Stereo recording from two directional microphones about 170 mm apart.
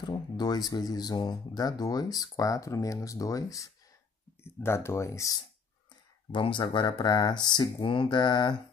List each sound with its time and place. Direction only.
0.1 s speech: 25° left (ahead or behind)
6.3 s speech: 30° left (ahead or behind)